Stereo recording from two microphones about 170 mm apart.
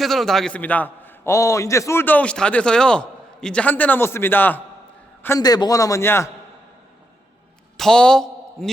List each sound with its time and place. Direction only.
0.0 s a man's voice: centre (ahead or behind)
7.8 s a man's voice: 5° left (ahead or behind)